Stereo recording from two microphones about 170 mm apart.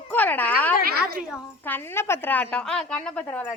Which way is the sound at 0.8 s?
65° right (ahead or behind).